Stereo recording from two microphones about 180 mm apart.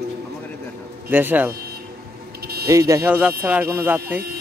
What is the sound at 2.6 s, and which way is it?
Speech, 20° right (ahead or behind).